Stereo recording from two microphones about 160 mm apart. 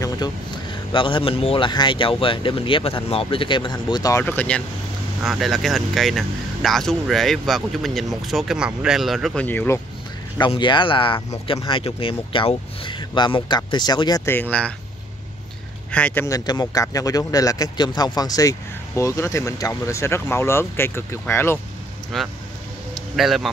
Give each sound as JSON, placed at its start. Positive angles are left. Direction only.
{"t": 0.0, "sound": "speech", "side_deg": 25}
{"t": 4.2, "sound": "speech", "side_deg": 10}
{"t": 10.5, "sound": "speech", "side_deg": 30}
{"t": 14.2, "sound": "speech", "side_deg": 10}
{"t": 15.9, "sound": "speech", "side_deg": 10}
{"t": 16.3, "sound": "speech", "side_deg": 25}
{"t": 22.1, "sound": "speech", "side_deg": 0}